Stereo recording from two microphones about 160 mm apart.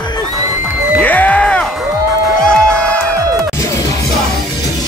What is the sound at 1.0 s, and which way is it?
Music, 10° left (ahead or behind).